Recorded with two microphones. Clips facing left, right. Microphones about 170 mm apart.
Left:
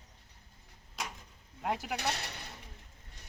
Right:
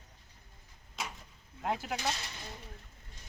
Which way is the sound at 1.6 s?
5° left (ahead or behind).